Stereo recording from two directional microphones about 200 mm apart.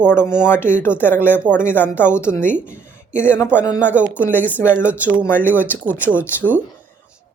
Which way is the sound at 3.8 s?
5° right (ahead or behind).